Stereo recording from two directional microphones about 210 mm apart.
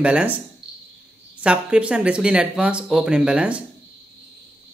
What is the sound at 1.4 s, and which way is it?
Speech, 5° right (ahead or behind).